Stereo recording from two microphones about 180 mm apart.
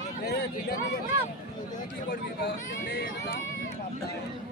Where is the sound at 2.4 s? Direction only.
75° left (ahead or behind).